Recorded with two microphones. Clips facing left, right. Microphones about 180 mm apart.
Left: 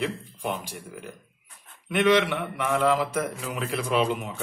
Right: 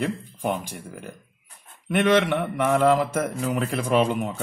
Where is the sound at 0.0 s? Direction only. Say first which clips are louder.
Right 3 dB; 45° right (ahead or behind).